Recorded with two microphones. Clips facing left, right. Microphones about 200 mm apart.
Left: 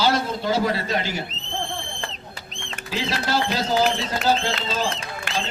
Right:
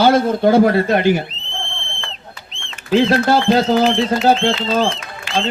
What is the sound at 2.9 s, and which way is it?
A man's voice, 55° right (ahead or behind).